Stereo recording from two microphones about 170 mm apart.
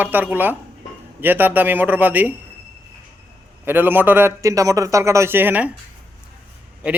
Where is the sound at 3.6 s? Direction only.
10° right (ahead or behind).